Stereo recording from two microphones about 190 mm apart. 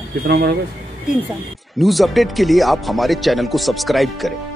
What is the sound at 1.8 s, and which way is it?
Speech, centre (ahead or behind).